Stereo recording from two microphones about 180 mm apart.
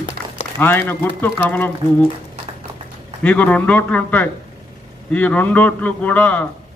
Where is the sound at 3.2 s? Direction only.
10° left (ahead or behind).